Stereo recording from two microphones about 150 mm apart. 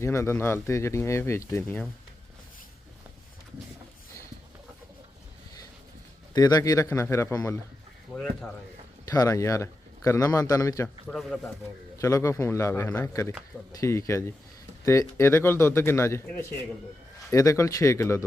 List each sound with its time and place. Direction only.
0.0 s speech: 20° left (ahead or behind)
6.3 s a man's voice: 25° left (ahead or behind)
8.1 s speech: 5° left (ahead or behind)
9.0 s a man's voice: 25° left (ahead or behind)
11.1 s speech: centre (ahead or behind)
11.9 s a man's voice: 20° left (ahead or behind)